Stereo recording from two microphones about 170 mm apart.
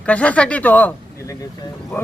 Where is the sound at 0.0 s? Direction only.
10° left (ahead or behind).